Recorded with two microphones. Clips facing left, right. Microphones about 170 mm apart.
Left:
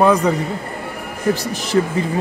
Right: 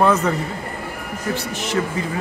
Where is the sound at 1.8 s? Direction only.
30° left (ahead or behind).